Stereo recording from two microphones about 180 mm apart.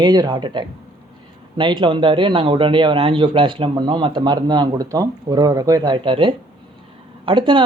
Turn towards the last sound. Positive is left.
turn(degrees=-25)  # may be behind; listen again after turning